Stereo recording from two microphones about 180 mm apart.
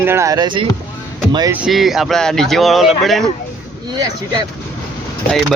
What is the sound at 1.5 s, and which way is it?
Speech, 5° right (ahead or behind).